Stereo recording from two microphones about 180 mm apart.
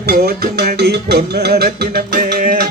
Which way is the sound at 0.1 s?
55° right (ahead or behind).